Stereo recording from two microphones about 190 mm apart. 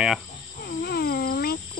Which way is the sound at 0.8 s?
55° left (ahead or behind).